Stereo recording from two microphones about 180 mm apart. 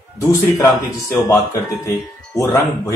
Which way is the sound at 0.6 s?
15° left (ahead or behind).